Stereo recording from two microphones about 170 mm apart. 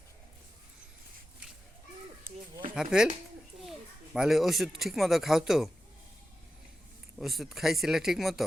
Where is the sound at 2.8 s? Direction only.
5° right (ahead or behind).